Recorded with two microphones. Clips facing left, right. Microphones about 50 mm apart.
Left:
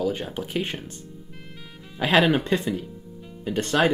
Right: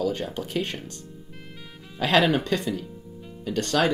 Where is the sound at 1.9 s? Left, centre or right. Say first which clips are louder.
Left 1 dB; centre.